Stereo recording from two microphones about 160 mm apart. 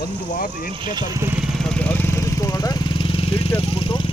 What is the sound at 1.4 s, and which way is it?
Vehicle, centre (ahead or behind).